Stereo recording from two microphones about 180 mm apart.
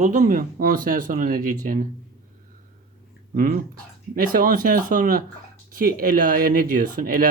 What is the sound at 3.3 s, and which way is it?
Speech, 50° right (ahead or behind).